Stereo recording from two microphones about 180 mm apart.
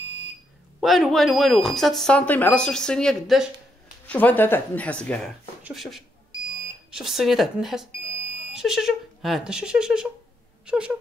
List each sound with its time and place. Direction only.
0.0 s smoke detector: 25° right (ahead or behind)
0.7 s speech: centre (ahead or behind)